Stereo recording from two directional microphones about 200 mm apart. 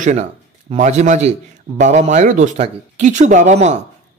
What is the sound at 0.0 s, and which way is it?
A man's voice, 35° right (ahead or behind).